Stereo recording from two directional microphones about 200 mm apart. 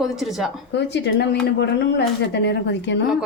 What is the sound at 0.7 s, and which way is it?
Speech, 60° left (ahead or behind).